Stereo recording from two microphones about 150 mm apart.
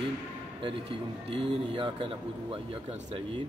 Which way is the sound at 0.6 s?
35° right (ahead or behind).